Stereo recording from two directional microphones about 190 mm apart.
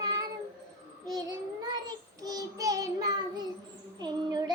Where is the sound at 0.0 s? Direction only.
20° right (ahead or behind).